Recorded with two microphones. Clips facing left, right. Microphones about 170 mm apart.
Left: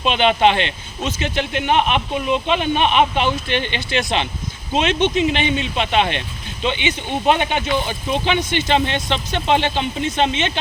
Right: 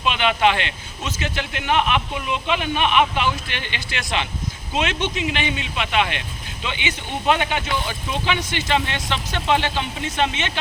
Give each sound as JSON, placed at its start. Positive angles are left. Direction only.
{"t": 0.0, "sound": "speech", "side_deg": 25}